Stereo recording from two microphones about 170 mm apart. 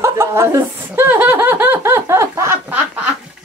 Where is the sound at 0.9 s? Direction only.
10° right (ahead or behind).